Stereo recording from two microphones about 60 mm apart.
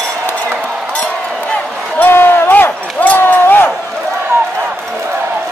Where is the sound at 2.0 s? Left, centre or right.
Left.